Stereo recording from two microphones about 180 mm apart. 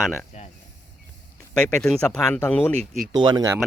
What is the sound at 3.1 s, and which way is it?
Speech, 25° right (ahead or behind).